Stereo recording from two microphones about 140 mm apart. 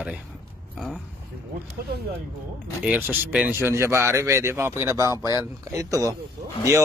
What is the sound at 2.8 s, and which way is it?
Speech, 10° right (ahead or behind).